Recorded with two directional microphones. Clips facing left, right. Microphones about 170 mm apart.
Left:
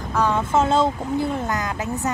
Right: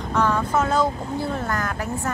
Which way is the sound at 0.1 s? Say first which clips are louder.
Left 1 dB; 15° left (ahead or behind).